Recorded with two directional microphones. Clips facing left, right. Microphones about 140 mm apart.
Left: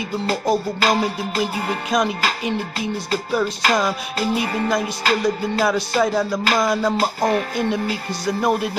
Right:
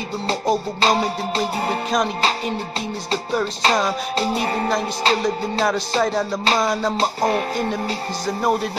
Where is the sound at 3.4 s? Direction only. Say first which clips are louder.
Even; 25° right (ahead or behind).